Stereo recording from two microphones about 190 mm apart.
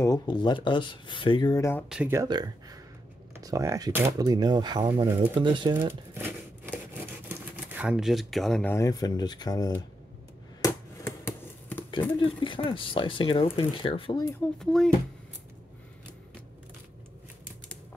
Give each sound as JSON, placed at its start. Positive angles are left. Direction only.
{"t": 0.0, "sound": "speech", "side_deg": 20}
{"t": 1.9, "sound": "speech", "side_deg": -10}
{"t": 6.1, "sound": "a sound", "side_deg": -10}
{"t": 7.2, "sound": "typewriter", "side_deg": -10}
{"t": 8.7, "sound": "speech", "side_deg": 20}
{"t": 10.6, "sound": "a sound", "side_deg": 10}
{"t": 12.2, "sound": "speech", "side_deg": 25}
{"t": 14.6, "sound": "speech", "side_deg": 0}